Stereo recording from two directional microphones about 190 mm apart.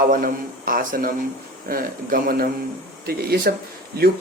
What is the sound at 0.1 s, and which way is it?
Speech, 50° right (ahead or behind).